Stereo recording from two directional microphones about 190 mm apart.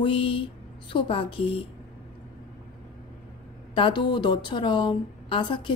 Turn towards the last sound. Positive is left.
turn(degrees=25)  # may be behind; listen again after turning